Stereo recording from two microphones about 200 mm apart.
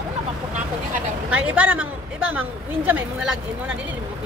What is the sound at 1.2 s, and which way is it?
A woman's voice, 5° right (ahead or behind).